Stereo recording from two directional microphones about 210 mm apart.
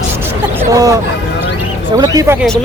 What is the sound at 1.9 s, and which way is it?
Speech, 15° right (ahead or behind).